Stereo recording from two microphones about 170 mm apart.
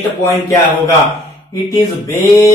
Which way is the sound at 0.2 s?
15° left (ahead or behind).